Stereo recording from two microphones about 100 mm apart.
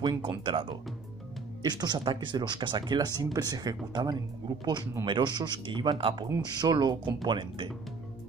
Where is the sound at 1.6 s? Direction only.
45° right (ahead or behind).